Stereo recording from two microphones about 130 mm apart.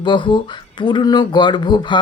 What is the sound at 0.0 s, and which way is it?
Speech, 35° left (ahead or behind).